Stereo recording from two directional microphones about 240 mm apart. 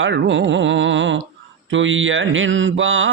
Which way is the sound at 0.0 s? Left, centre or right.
Right.